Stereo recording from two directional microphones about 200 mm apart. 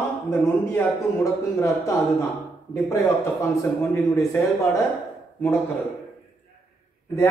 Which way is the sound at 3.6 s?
15° left (ahead or behind).